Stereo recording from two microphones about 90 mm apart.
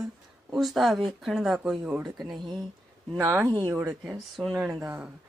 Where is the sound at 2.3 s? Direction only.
50° right (ahead or behind).